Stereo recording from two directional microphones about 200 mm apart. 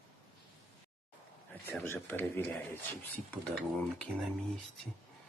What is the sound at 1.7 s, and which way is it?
Speech, 10° left (ahead or behind).